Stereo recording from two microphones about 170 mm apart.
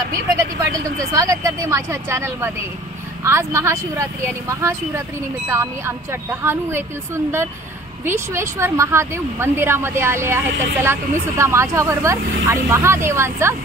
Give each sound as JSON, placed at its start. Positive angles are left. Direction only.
{"t": 1.1, "sound": "speech", "side_deg": -20}
{"t": 8.0, "sound": "speech", "side_deg": -15}